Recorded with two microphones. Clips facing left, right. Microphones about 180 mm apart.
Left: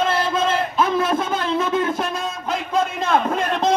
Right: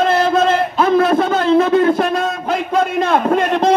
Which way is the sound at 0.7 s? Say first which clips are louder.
Right 8 dB; 70° right (ahead or behind).